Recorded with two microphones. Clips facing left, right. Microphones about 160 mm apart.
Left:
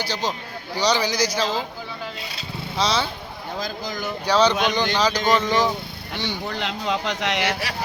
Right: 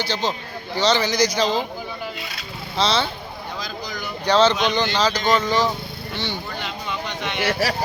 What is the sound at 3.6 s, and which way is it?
Speech, 45° left (ahead or behind).